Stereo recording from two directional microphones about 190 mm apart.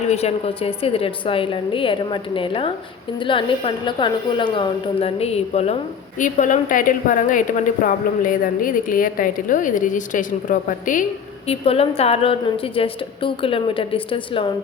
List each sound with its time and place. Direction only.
0.1 s a woman's voice: 35° left (ahead or behind)
11.4 s a woman's voice: 30° left (ahead or behind)